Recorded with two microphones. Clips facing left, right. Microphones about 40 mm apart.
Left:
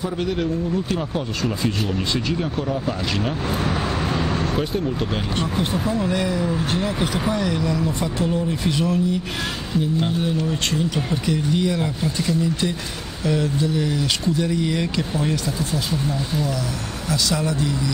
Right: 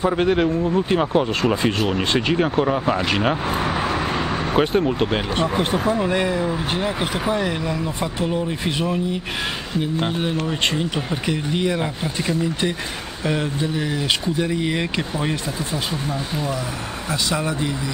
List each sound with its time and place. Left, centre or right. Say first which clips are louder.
0.0 s speech: right 6 dB; right
3.4 s vehicle: right 2 dB; centre
4.6 s speech: right 5 dB; right